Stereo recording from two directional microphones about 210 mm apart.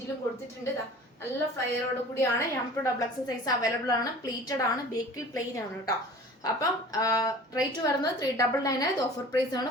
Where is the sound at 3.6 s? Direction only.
15° left (ahead or behind).